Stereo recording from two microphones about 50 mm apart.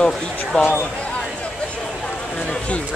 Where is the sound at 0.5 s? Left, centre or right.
Left.